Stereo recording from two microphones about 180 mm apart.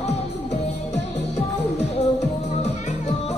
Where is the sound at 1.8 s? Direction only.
35° left (ahead or behind).